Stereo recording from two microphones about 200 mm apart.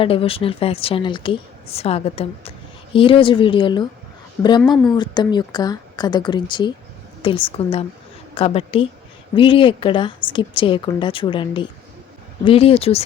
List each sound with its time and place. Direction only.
0.0 s speech: 25° left (ahead or behind)
4.6 s speech: centre (ahead or behind)
4.9 s speech: 20° left (ahead or behind)